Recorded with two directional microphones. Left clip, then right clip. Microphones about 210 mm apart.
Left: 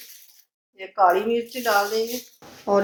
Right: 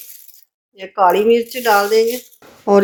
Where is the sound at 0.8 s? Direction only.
60° right (ahead or behind).